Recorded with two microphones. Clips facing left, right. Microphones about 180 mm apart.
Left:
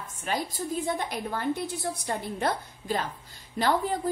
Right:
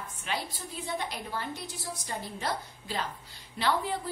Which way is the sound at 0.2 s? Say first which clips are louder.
Left 6 dB; 45° left (ahead or behind).